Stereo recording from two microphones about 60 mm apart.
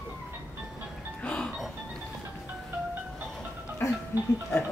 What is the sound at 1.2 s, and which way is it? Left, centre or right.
Music, left.